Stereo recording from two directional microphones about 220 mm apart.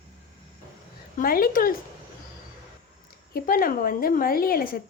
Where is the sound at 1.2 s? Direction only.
40° left (ahead or behind).